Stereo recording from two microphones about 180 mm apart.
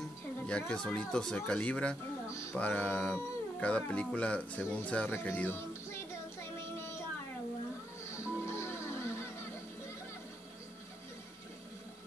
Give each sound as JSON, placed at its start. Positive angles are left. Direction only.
{"t": 0.5, "sound": "speech", "side_deg": 5}
{"t": 8.5, "sound": "music", "side_deg": 15}